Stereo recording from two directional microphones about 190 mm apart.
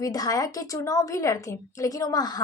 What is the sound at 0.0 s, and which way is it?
A woman's voice, 20° left (ahead or behind).